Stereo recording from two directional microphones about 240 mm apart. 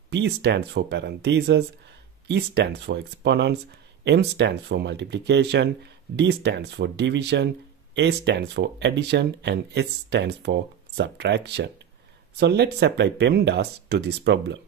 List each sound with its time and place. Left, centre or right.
0.1 s speech: right